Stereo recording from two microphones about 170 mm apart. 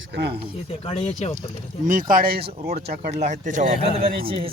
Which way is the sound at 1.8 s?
50° right (ahead or behind).